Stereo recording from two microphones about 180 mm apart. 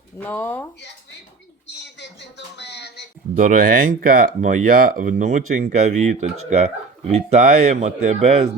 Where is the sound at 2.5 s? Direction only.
70° left (ahead or behind).